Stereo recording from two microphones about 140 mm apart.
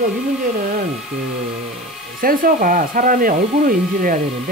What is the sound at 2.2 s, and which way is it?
Speech, 85° right.